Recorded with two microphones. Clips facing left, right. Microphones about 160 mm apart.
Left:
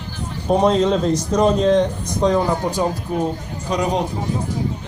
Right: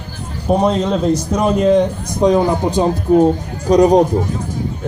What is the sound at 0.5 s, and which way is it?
A man's voice, centre (ahead or behind).